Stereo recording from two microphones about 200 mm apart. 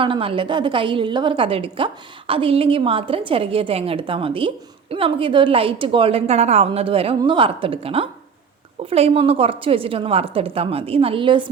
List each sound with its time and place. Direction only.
0.0 s a woman's voice: 25° right (ahead or behind)